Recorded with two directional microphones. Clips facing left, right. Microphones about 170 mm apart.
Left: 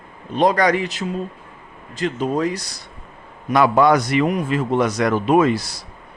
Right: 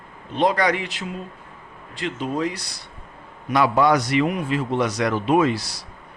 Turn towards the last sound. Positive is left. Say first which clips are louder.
# left 3 dB
turn(degrees=50)  # may be behind; listen again after turning